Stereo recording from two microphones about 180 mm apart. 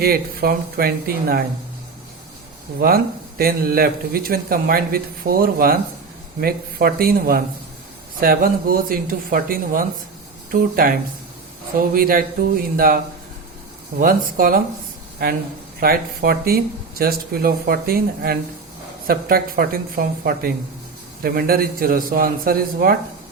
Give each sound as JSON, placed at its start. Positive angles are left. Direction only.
{"t": 0.0, "sound": "speech", "side_deg": -55}
{"t": 2.8, "sound": "speech", "side_deg": -55}
{"t": 14.0, "sound": "speech", "side_deg": -50}